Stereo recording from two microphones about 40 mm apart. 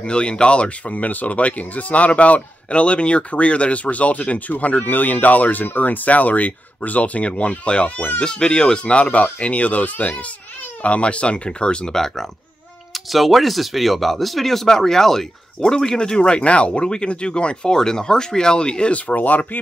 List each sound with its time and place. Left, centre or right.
0.0 s speech: left
0.8 s speech: left
11.9 s speech: centre
12.9 s speech: centre; by 17.7 s left
17.7 s speech: centre; by 19.6 s left